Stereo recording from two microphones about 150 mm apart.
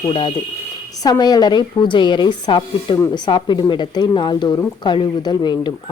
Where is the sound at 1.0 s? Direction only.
25° left (ahead or behind).